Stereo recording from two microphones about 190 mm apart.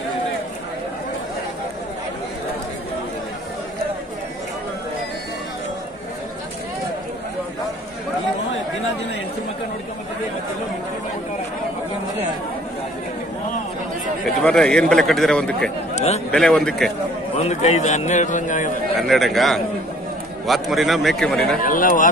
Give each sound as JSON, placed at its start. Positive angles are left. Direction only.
{"t": 14.4, "sound": "a man's voice", "side_deg": 5}
{"t": 15.9, "sound": "a man's voice", "side_deg": 35}
{"t": 16.3, "sound": "a man's voice", "side_deg": 5}
{"t": 17.4, "sound": "a man's voice", "side_deg": 35}
{"t": 18.9, "sound": "a man's voice", "side_deg": 0}
{"t": 21.6, "sound": "speech", "side_deg": 45}